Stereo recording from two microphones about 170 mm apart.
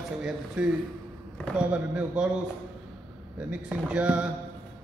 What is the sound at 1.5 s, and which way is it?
Speech, 5° right (ahead or behind).